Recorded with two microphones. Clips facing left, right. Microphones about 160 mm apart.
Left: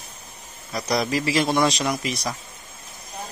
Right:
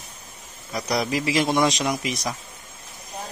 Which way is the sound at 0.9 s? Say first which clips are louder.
Even; 15° right (ahead or behind).